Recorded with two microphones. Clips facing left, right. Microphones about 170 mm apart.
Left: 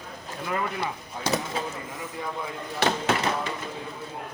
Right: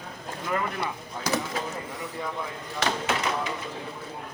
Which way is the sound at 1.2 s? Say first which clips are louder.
Left 1 dB; 25° left (ahead or behind).